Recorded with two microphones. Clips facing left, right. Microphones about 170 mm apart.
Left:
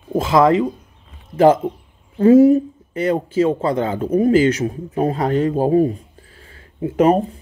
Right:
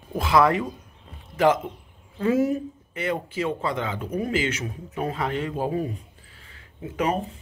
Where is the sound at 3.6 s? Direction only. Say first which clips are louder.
Left 8 dB; 45° left (ahead or behind).